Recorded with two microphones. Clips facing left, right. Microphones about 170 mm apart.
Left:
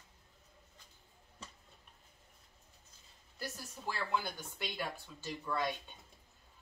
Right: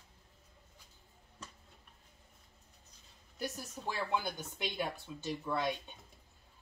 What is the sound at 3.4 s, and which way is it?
Speech, 15° right (ahead or behind).